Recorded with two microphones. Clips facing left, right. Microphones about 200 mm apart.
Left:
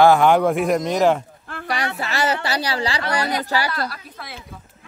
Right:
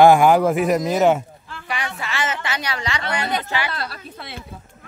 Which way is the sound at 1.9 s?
40° left (ahead or behind).